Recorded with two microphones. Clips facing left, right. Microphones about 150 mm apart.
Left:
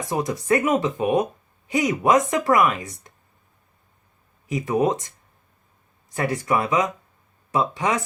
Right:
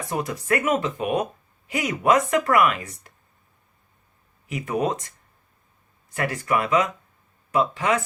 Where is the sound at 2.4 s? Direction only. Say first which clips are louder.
Left 1 dB; 20° left (ahead or behind).